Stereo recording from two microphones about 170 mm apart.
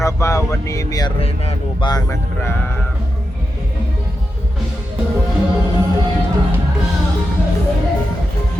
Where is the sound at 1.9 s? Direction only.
20° left (ahead or behind).